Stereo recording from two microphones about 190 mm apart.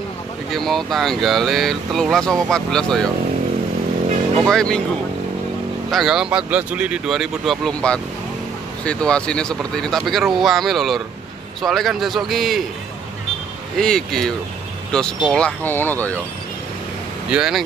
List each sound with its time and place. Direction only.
0.5 s speech: centre (ahead or behind)
4.5 s speech: 5° left (ahead or behind)
5.9 s speech: centre (ahead or behind)
13.7 s speech: 5° left (ahead or behind)
17.3 s speech: 5° right (ahead or behind)